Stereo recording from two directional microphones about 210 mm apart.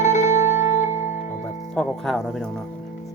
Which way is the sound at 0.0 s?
35° left (ahead or behind).